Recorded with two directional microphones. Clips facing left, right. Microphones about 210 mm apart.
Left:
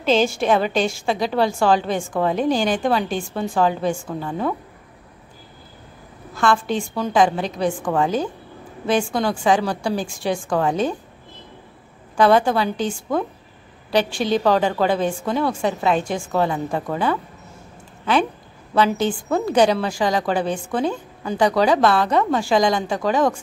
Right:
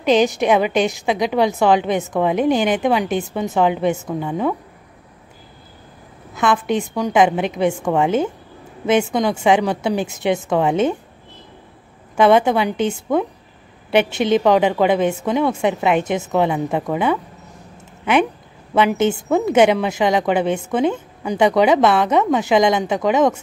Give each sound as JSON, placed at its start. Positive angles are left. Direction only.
{"t": 0.0, "sound": "a woman's voice", "side_deg": -15}
{"t": 6.3, "sound": "a woman's voice", "side_deg": -20}
{"t": 12.2, "sound": "a woman's voice", "side_deg": -20}
{"t": 18.8, "sound": "a woman's voice", "side_deg": -20}